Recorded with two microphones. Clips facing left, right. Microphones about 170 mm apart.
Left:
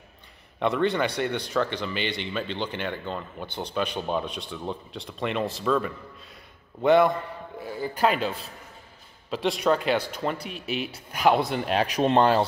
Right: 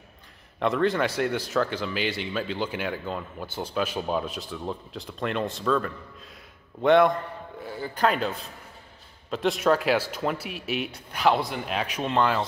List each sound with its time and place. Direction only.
0.6 s speech: centre (ahead or behind)
11.1 s a man's voice: 10° left (ahead or behind)
11.3 s speech: 30° left (ahead or behind)